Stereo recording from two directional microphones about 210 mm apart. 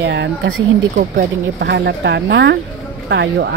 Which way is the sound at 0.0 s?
60° right (ahead or behind).